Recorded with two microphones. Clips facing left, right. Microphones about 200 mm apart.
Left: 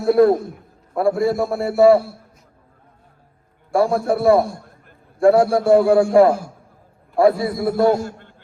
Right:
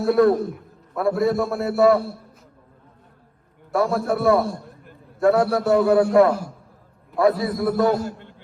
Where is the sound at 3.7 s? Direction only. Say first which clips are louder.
Left 3 dB; 30° left (ahead or behind).